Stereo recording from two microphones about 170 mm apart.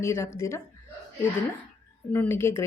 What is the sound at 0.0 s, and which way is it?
Speech, 15° left (ahead or behind).